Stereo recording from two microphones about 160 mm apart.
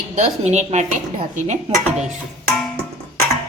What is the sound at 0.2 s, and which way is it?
Speech, 45° right (ahead or behind).